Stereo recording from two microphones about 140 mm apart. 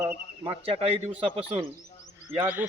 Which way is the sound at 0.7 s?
45° right (ahead or behind).